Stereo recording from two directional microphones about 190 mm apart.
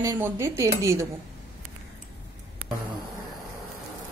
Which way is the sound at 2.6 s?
90° right.